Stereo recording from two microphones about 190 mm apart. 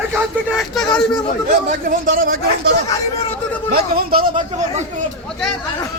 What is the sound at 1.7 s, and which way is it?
A man's voice, 50° right (ahead or behind).